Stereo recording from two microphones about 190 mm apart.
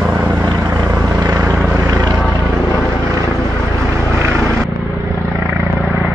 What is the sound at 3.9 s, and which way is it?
Vehicle, 10° right (ahead or behind).